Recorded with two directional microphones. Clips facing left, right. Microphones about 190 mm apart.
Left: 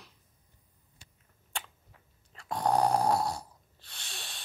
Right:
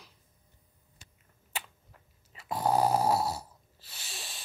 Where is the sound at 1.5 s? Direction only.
5° right (ahead or behind).